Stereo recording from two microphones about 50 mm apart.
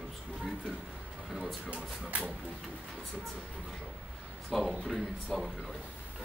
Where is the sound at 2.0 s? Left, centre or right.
Right.